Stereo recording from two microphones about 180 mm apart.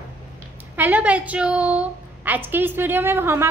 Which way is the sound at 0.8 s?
10° right (ahead or behind).